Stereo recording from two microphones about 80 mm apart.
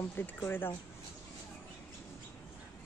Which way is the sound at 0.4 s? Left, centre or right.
Left.